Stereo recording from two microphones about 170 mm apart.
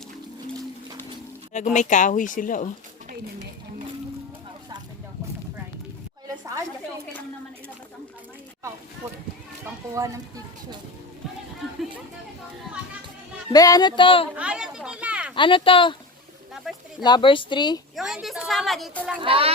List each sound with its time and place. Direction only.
1.5 s speech: 45° left (ahead or behind)
9.9 s speech: 20° right (ahead or behind)
13.5 s speech: 20° left (ahead or behind)
14.3 s a woman's voice: 5° right (ahead or behind)
15.4 s speech: 30° left (ahead or behind)
16.7 s a woman's voice: centre (ahead or behind)
17.0 s speech: 30° left (ahead or behind)
17.9 s a woman's voice: centre (ahead or behind)
19.2 s speech: 35° right (ahead or behind)